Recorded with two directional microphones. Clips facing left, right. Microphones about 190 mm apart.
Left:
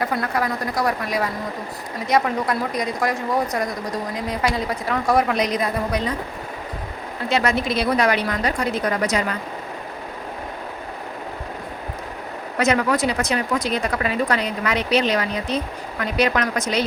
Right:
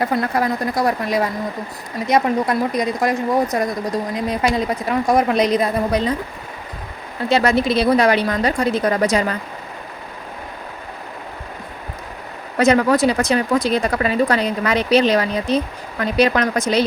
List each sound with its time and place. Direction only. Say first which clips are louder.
0.0 s speech: right 4 dB; 25° right (ahead or behind)
7.3 s speech: right 5 dB; 30° right (ahead or behind)
12.5 s speech: right 5 dB; 30° right (ahead or behind)